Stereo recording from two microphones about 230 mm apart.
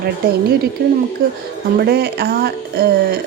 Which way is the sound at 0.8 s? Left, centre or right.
Right.